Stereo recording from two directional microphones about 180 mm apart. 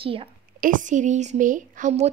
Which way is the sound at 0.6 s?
50° right (ahead or behind).